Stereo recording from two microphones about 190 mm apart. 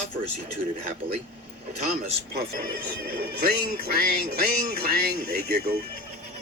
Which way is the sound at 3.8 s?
55° right (ahead or behind).